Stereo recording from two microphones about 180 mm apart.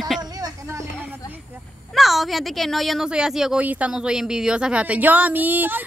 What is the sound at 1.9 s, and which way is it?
Speech, centre (ahead or behind).